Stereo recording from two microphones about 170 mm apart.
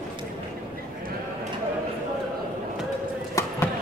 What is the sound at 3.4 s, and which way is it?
Basketball bounce, 20° left (ahead or behind).